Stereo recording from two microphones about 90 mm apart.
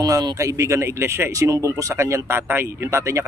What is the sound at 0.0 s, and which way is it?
Speech, 50° right (ahead or behind).